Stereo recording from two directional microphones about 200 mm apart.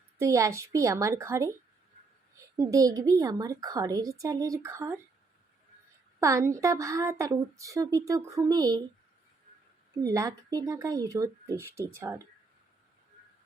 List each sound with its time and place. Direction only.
0.2 s a woman's voice: 15° right (ahead or behind)
2.6 s a woman's voice: 15° right (ahead or behind)
6.1 s a woman's voice: 15° right (ahead or behind)
10.1 s a woman's voice: 15° right (ahead or behind)